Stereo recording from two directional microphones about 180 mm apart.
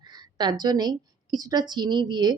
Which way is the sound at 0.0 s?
25° right (ahead or behind).